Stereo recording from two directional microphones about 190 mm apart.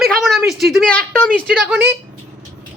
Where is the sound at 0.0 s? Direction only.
Centre (ahead or behind).